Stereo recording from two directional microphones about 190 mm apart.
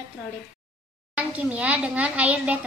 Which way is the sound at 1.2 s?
5° right (ahead or behind).